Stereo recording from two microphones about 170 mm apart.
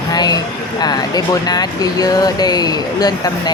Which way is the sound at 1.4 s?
25° left (ahead or behind).